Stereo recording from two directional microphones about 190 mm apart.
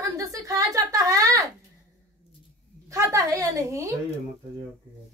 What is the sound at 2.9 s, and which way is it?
Speech, 15° right (ahead or behind).